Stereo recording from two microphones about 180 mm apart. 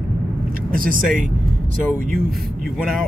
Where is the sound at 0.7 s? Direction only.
50° right (ahead or behind).